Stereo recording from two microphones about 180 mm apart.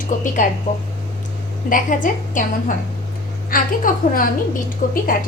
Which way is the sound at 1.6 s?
50° left (ahead or behind).